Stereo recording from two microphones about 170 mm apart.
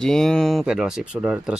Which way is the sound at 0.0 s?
5° left (ahead or behind).